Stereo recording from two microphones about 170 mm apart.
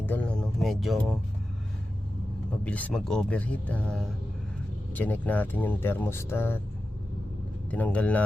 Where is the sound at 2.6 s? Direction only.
10° left (ahead or behind).